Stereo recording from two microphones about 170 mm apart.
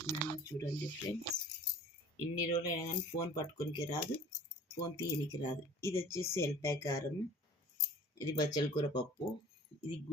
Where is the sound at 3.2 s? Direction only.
20° left (ahead or behind).